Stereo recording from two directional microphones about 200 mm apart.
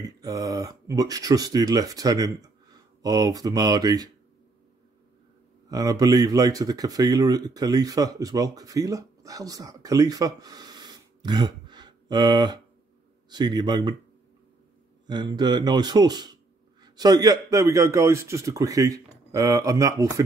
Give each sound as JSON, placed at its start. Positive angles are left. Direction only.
{"t": 0.2, "sound": "speech", "side_deg": -15}
{"t": 5.7, "sound": "speech", "side_deg": -20}
{"t": 15.0, "sound": "speech", "side_deg": -20}